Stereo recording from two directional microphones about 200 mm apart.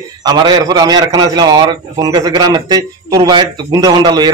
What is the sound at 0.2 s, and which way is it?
A man's voice, 20° right (ahead or behind).